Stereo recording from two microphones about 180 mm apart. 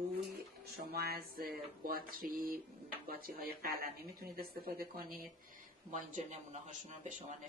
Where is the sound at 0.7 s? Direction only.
60° right (ahead or behind).